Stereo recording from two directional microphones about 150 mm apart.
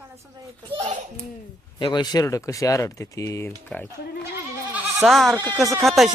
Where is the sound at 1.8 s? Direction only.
30° left (ahead or behind); by 3.9 s 10° left (ahead or behind).